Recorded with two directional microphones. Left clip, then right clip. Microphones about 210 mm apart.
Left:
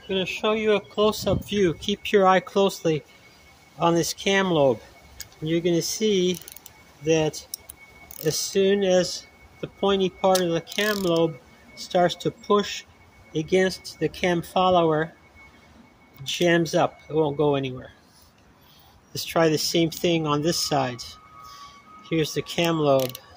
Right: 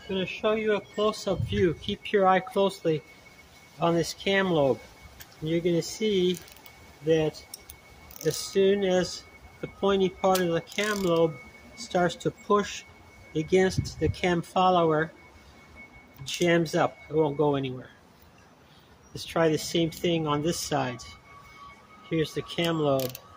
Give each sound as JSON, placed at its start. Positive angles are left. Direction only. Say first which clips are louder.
{"t": 0.1, "sound": "speech", "louder": "left 3 dB", "side_deg": 55}
{"t": 16.3, "sound": "speech", "louder": "left 3 dB", "side_deg": 35}
{"t": 19.1, "sound": "speech", "louder": "left 4 dB", "side_deg": 50}